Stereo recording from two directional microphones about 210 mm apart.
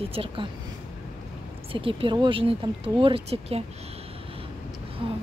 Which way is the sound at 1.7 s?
25° right (ahead or behind).